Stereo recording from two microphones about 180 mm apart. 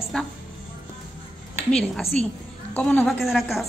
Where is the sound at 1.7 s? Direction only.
5° left (ahead or behind).